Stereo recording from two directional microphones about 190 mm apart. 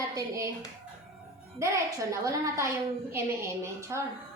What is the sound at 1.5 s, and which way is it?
A woman's voice, 15° right (ahead or behind).